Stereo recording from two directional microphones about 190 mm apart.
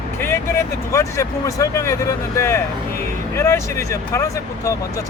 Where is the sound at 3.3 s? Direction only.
15° left (ahead or behind).